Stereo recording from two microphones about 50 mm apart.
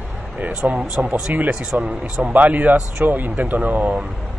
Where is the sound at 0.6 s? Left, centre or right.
Centre.